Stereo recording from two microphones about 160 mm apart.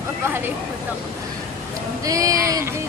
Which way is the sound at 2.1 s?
20° right (ahead or behind).